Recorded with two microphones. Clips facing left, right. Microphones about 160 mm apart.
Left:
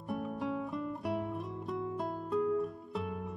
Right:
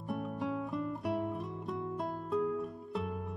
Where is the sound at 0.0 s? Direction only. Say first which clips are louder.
Even; centre (ahead or behind).